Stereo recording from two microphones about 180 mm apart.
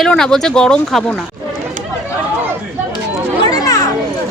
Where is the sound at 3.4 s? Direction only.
20° left (ahead or behind).